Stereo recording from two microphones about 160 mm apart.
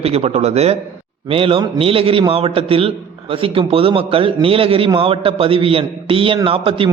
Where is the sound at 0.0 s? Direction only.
40° right (ahead or behind).